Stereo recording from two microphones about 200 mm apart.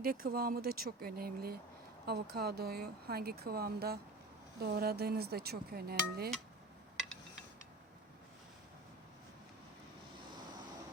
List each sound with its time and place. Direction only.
0.0 s speech: 45° right (ahead or behind)